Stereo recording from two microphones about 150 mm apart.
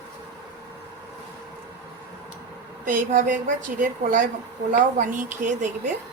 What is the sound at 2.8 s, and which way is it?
A woman's voice, 60° right (ahead or behind).